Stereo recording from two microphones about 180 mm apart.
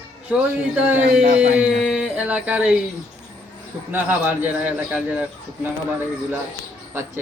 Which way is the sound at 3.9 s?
10° right (ahead or behind).